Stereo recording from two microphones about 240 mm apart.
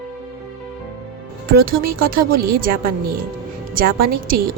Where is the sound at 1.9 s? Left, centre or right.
Right.